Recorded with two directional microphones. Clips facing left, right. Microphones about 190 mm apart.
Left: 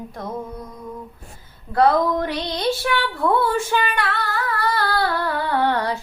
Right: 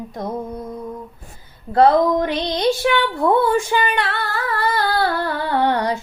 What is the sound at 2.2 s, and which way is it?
Speech, 20° right (ahead or behind).